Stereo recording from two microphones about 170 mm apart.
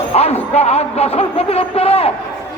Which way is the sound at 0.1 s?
40° left (ahead or behind).